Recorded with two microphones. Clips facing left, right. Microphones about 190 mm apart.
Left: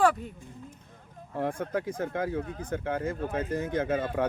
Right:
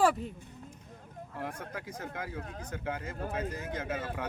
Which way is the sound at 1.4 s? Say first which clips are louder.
Left 10 dB; 50° left (ahead or behind).